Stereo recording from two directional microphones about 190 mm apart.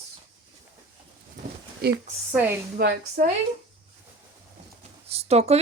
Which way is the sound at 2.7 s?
55° right (ahead or behind).